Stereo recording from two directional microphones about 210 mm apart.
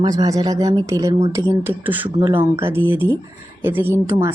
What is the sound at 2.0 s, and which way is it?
Speech, 20° right (ahead or behind).